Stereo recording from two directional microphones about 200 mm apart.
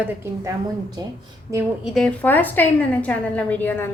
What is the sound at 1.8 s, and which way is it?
A woman's voice, centre (ahead or behind).